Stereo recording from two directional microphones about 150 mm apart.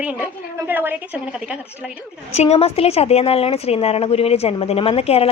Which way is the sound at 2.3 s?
45° left (ahead or behind).